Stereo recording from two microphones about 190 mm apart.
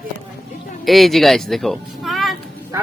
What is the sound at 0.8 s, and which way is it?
Speech, centre (ahead or behind).